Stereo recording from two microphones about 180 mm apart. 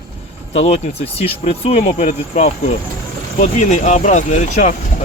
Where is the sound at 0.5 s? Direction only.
35° left (ahead or behind).